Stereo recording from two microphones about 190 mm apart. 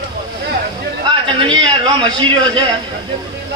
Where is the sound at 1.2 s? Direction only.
25° right (ahead or behind).